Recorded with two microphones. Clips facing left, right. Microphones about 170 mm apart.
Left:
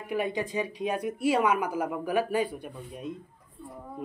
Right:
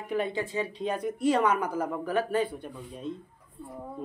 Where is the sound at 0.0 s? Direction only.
10° left (ahead or behind).